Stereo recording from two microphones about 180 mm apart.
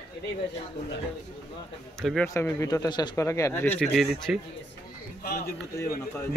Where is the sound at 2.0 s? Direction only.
5° left (ahead or behind).